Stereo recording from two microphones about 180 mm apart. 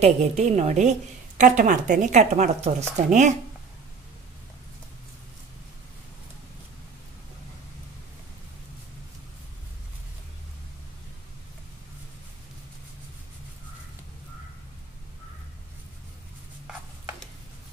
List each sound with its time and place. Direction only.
0.0 s a woman's voice: 40° right (ahead or behind)